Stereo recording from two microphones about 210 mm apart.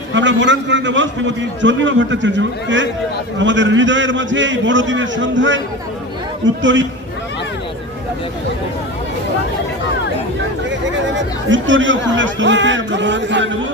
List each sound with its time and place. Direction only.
0.1 s speech: 60° right (ahead or behind)
10.7 s speech: 60° right (ahead or behind)